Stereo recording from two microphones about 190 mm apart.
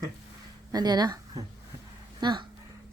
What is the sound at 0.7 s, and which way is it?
Speech, 20° right (ahead or behind).